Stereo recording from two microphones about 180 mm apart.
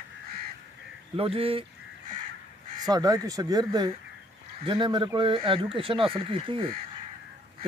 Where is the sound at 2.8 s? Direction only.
20° right (ahead or behind).